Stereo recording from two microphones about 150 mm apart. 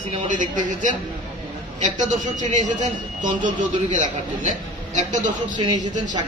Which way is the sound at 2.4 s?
55° right (ahead or behind).